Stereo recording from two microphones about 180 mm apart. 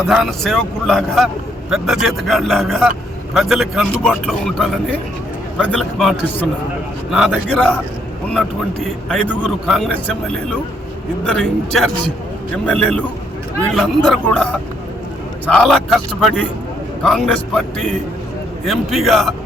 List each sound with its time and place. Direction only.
0.1 s speech: centre (ahead or behind)
11.3 s speech: centre (ahead or behind)
15.4 s speech: 5° left (ahead or behind)